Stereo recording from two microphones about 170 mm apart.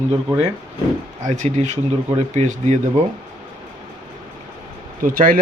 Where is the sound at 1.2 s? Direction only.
45° right (ahead or behind).